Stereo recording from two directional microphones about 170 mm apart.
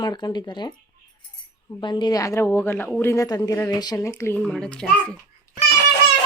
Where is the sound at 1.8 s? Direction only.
25° left (ahead or behind); by 4.9 s 5° left (ahead or behind).